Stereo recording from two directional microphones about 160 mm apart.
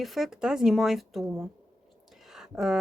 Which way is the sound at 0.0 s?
Centre (ahead or behind).